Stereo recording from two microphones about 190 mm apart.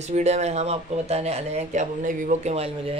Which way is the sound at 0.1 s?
35° right (ahead or behind).